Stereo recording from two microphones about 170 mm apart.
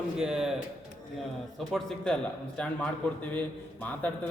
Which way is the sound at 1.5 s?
Centre (ahead or behind).